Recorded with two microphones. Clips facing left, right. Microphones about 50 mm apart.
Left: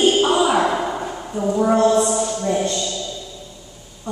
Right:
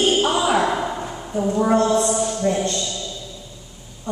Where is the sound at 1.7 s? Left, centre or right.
Left.